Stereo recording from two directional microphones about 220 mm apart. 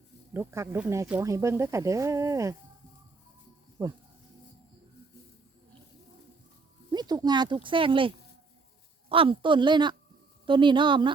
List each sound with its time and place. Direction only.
0.3 s speech: 10° right (ahead or behind)
3.8 s speech: 10° right (ahead or behind)
6.9 s speech: 20° right (ahead or behind)